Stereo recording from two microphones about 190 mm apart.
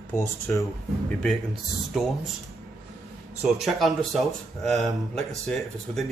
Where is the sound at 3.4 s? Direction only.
Centre (ahead or behind).